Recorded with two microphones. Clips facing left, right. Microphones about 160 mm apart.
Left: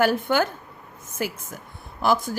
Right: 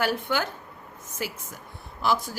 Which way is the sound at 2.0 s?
50° left (ahead or behind).